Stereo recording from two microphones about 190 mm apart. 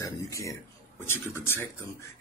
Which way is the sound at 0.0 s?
15° left (ahead or behind).